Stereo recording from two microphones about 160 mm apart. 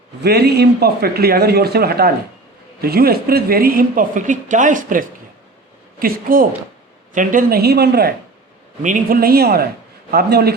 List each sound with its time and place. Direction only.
0.2 s a woman's voice: 85° right
8.8 s a woman's voice: 60° right (ahead or behind); by 10.5 s 80° right